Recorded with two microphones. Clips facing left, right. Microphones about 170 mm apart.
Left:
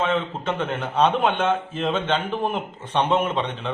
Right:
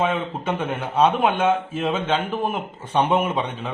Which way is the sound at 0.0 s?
10° right (ahead or behind).